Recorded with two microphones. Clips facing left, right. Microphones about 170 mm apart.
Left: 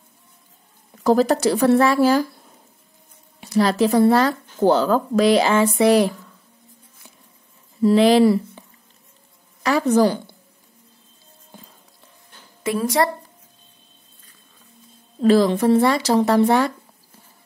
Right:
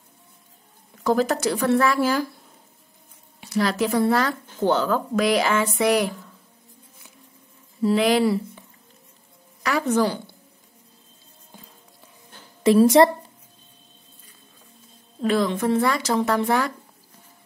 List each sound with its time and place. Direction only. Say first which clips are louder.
1.0 s speech: left 4 dB; 35° left (ahead or behind)
3.3 s speech: left 5 dB; 35° left (ahead or behind)
7.8 s speech: left 5 dB; 30° left (ahead or behind)
9.6 s a woman's voice: left 5 dB; 35° left (ahead or behind)
12.6 s a woman's voice: right 6 dB; 30° right (ahead or behind)
15.2 s speech: left 6 dB; 35° left (ahead or behind)